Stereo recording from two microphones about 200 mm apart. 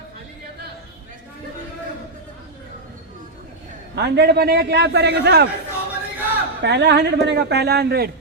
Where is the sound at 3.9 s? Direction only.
60° right (ahead or behind).